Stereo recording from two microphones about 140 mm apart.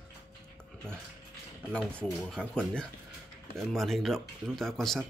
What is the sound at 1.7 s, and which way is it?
Speech, 5° left (ahead or behind).